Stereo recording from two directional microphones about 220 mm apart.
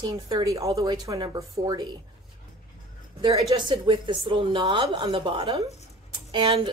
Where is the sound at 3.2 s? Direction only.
20° right (ahead or behind).